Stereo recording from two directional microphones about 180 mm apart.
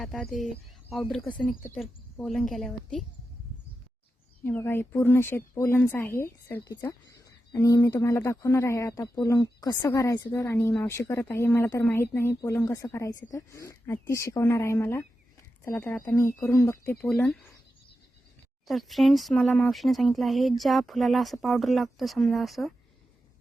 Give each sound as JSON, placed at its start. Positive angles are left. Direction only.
{"t": 0.0, "sound": "speech", "side_deg": 0}
{"t": 4.4, "sound": "a woman's voice", "side_deg": 10}
{"t": 18.7, "sound": "speech", "side_deg": 0}